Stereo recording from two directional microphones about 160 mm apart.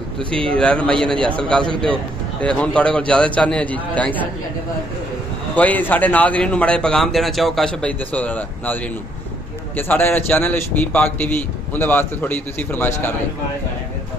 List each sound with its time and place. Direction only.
0.2 s a man's voice: 35° right (ahead or behind)
0.5 s a man's voice: 5° left (ahead or behind)
2.4 s a man's voice: 10° left (ahead or behind)
5.6 s a man's voice: 10° left (ahead or behind)
9.8 s a man's voice: 10° left (ahead or behind)